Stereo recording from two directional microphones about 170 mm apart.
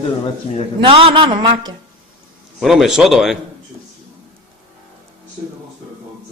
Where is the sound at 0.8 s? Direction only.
30° right (ahead or behind).